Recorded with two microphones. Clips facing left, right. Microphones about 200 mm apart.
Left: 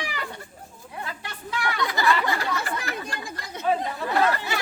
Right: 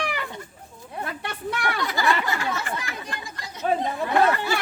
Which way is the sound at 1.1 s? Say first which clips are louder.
Right 7 dB; 60° right (ahead or behind).